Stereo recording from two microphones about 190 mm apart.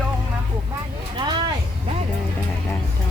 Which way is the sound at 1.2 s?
25° right (ahead or behind).